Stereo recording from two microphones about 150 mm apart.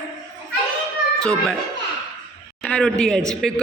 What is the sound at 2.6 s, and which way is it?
Speech, 5° left (ahead or behind).